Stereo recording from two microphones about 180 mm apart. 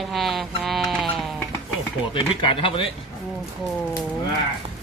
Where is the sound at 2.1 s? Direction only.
30° left (ahead or behind).